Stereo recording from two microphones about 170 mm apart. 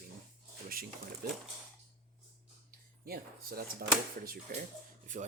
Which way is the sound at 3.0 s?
60° right (ahead or behind).